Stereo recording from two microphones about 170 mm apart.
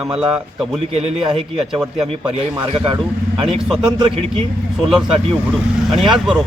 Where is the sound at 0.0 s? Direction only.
5° right (ahead or behind).